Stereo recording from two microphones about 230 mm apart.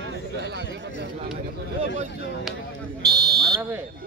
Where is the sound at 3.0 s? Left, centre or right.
Centre.